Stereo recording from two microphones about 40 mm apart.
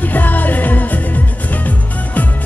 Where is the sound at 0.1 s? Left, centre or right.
Left.